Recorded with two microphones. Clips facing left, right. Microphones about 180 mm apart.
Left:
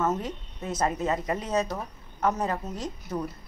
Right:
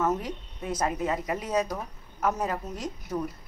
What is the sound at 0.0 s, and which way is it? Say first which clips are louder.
A woman's voice: even; 10° right (ahead or behind).